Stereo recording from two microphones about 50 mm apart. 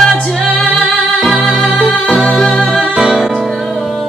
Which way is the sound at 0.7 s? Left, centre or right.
Centre.